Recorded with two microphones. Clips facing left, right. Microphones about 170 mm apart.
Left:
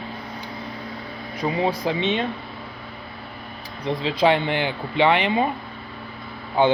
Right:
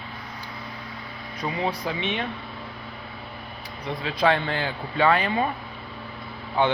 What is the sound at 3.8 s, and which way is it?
Speech, 25° left (ahead or behind).